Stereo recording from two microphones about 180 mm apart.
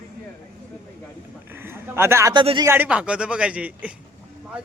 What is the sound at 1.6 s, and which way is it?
Speech, 15° right (ahead or behind).